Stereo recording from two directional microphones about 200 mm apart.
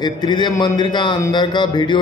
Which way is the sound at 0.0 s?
20° left (ahead or behind).